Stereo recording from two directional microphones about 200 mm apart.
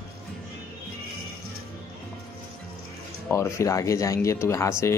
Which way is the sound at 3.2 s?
15° left (ahead or behind).